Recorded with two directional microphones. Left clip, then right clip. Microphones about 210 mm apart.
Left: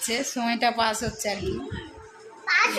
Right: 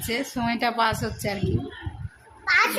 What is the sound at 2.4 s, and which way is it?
Children playing, 30° right (ahead or behind).